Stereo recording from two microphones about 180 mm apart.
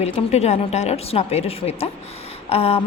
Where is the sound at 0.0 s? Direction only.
35° left (ahead or behind).